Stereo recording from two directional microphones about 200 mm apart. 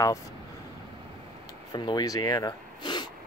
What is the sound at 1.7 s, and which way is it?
Speech, 20° left (ahead or behind).